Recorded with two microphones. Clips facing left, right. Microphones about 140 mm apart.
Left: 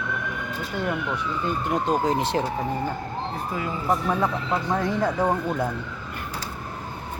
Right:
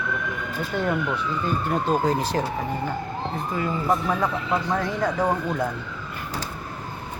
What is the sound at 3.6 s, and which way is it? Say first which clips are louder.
Speech: right 2 dB; 5° left (ahead or behind).